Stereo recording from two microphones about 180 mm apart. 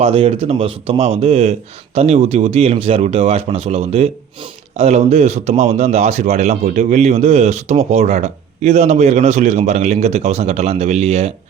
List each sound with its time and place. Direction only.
0.0 s speech: 35° right (ahead or behind)